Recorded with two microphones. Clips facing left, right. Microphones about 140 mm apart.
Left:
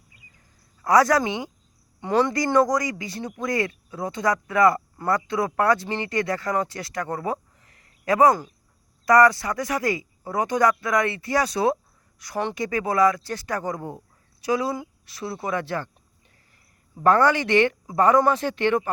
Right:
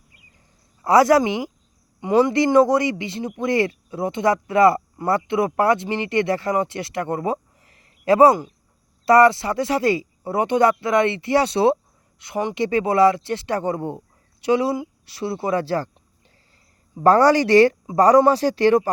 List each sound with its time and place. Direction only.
0.8 s speech: 25° right (ahead or behind)
17.0 s speech: 35° right (ahead or behind)